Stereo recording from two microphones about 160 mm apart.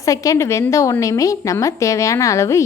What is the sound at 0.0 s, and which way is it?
A woman's voice, 20° left (ahead or behind).